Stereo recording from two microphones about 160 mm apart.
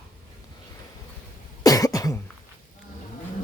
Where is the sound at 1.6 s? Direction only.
25° left (ahead or behind).